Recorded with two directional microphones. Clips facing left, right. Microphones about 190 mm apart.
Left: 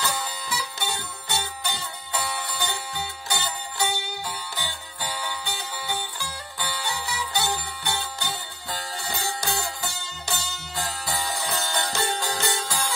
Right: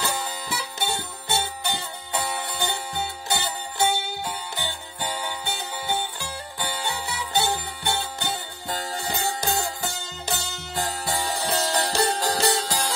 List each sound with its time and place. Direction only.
0.9 s music: 50° right (ahead or behind)
2.1 s music: 25° right (ahead or behind)
10.8 s music: 25° right (ahead or behind)